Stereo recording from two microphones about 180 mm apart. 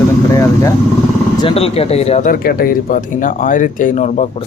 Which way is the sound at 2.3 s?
55° left (ahead or behind).